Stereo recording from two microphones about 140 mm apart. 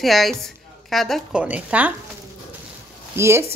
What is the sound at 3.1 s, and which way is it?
Speech, 20° right (ahead or behind).